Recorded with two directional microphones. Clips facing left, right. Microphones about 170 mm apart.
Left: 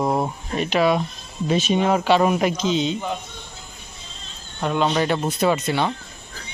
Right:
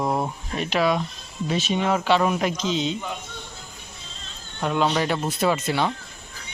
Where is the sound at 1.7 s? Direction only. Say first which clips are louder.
Left 3 dB; 35° left (ahead or behind).